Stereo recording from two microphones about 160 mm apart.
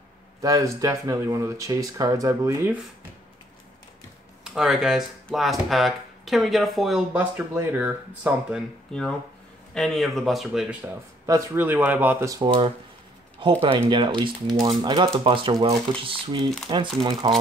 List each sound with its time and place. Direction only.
0.4 s speech: 20° right (ahead or behind)
4.5 s speech: 5° right (ahead or behind)
7.5 s speech: 10° right (ahead or behind)
8.9 s speech: 5° left (ahead or behind)
11.2 s speech: 15° right (ahead or behind)
12.4 s speech: 35° right (ahead or behind)
13.7 s speech: 25° right (ahead or behind)